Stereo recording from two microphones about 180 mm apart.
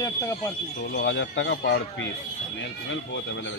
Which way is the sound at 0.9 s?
90° left.